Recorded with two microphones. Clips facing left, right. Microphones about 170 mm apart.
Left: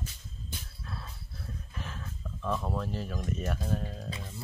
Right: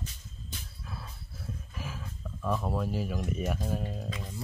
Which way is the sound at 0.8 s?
5° right (ahead or behind).